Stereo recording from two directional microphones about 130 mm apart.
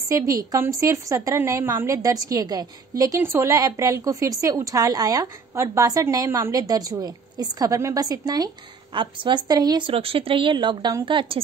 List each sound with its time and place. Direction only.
0.1 s a woman's voice: 25° right (ahead or behind)
8.9 s a woman's voice: 40° right (ahead or behind)